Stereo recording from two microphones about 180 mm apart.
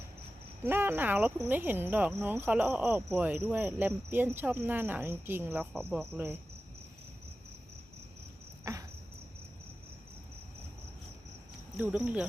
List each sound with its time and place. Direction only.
0.6 s speech: 10° right (ahead or behind)
8.7 s cricket: 20° right (ahead or behind)
11.8 s speech: 10° right (ahead or behind)